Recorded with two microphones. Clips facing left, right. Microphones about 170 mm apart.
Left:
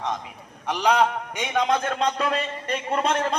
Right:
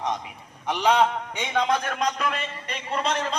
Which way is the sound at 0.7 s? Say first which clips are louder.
Even; centre (ahead or behind).